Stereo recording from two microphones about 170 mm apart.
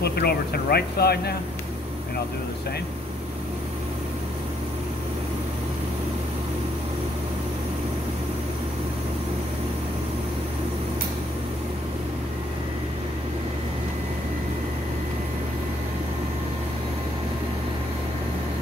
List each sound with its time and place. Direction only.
0.0 s speech: 70° left (ahead or behind)